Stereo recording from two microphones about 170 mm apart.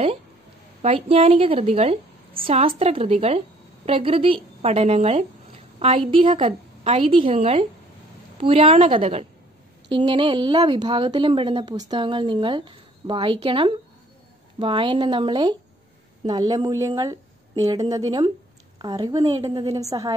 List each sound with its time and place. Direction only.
0.8 s a woman's voice: 35° right (ahead or behind)